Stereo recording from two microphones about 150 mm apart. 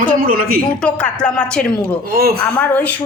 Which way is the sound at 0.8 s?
5° left (ahead or behind).